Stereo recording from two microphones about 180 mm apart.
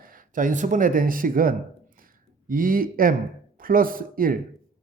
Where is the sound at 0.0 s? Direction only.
50° right (ahead or behind).